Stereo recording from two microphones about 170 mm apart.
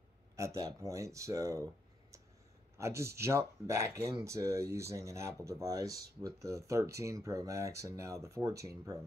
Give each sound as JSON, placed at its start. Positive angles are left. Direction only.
{"t": 0.4, "sound": "speech", "side_deg": -20}